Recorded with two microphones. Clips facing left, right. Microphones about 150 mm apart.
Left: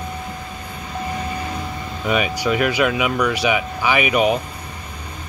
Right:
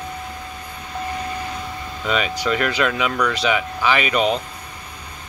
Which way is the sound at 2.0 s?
15° left (ahead or behind).